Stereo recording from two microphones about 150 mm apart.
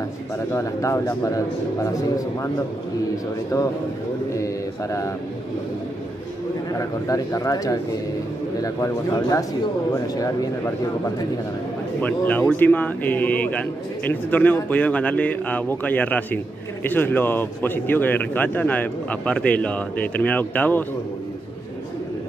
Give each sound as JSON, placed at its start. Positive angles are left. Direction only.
{"t": 0.5, "sound": "a man's voice", "side_deg": 20}
{"t": 6.8, "sound": "a man's voice", "side_deg": 20}
{"t": 12.0, "sound": "a man's voice", "side_deg": 10}